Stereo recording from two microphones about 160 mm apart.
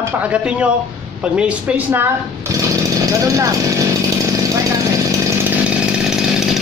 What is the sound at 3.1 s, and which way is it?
Speech, 20° right (ahead or behind).